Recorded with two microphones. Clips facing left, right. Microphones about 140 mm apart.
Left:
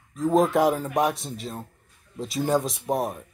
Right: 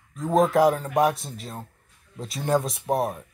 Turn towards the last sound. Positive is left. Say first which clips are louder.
# right 1 dB
turn(degrees=0)  # may be behind; listen again after turning